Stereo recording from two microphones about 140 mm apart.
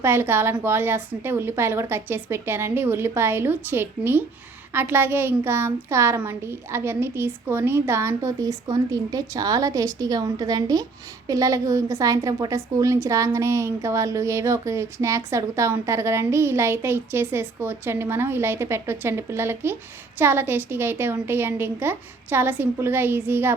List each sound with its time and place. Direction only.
0.0 s a woman's voice: 15° right (ahead or behind)